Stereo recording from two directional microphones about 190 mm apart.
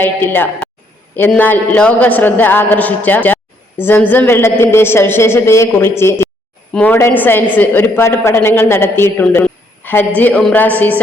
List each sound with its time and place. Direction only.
0.0 s a woman's voice: 10° left (ahead or behind)